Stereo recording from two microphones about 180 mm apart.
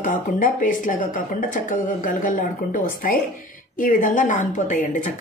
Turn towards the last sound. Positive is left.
turn(degrees=45)  # may be behind; listen again after turning